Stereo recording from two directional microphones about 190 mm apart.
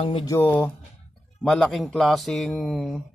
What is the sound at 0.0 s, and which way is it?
Speech, 30° left (ahead or behind).